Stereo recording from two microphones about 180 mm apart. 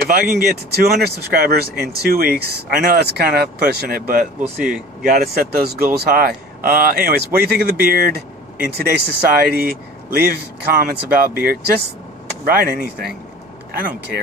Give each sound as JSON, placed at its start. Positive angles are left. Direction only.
{"t": 0.1, "sound": "speech", "side_deg": -55}